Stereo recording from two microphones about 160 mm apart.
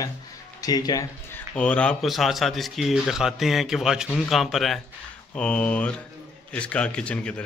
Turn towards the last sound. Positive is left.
turn(degrees=5)  # may be behind; listen again after turning